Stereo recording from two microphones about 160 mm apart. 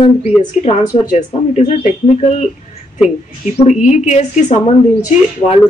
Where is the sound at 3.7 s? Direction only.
45° left (ahead or behind).